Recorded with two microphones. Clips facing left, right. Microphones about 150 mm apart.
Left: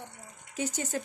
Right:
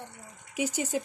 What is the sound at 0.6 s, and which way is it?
Speech, 10° right (ahead or behind).